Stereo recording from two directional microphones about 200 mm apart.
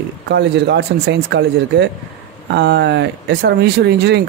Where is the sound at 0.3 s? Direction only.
60° right (ahead or behind).